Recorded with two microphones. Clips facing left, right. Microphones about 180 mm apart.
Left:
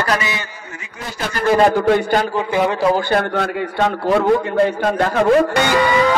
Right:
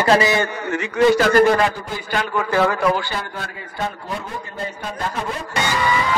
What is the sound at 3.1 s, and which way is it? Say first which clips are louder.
A man's voice: left 11 dB; 70° left (ahead or behind).